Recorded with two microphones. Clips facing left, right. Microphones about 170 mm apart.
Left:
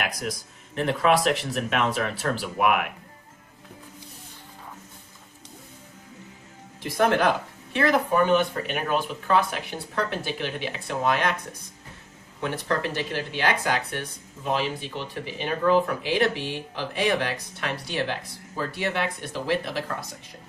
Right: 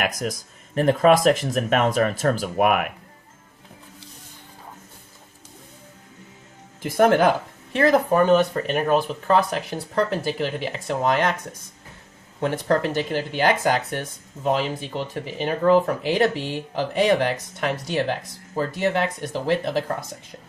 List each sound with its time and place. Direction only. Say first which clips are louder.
0.0 s speech: right 4 dB; 45° right (ahead or behind)
6.8 s speech: right 5 dB; 45° right (ahead or behind)
12.4 s speech: right 6 dB; 45° right (ahead or behind)